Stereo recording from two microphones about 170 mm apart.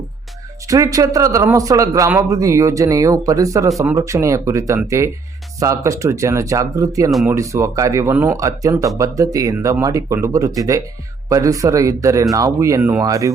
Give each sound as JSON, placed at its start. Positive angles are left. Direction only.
{"t": 0.7, "sound": "a man's voice", "side_deg": -20}